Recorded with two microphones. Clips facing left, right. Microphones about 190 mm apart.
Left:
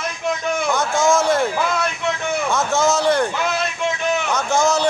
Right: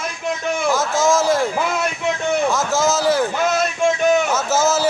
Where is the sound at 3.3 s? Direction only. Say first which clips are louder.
Right 4 dB; 45° right (ahead or behind).